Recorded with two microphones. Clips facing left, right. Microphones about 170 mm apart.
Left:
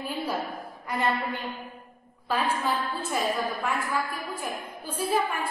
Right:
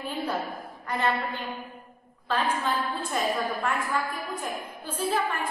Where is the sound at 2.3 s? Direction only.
5° left (ahead or behind).